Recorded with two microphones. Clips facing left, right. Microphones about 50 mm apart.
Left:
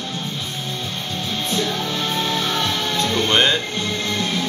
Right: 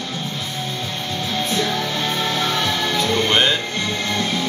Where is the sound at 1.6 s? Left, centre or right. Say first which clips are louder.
Right 1 dB; right.